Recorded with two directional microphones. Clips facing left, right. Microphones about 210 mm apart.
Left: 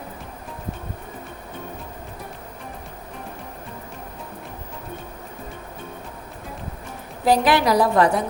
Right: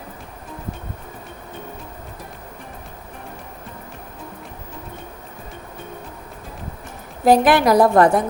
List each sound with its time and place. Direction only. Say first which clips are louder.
7.3 s a woman's voice: right 4 dB; 50° right (ahead or behind)